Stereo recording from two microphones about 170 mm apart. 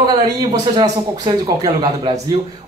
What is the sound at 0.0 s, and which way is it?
Speech, 25° right (ahead or behind).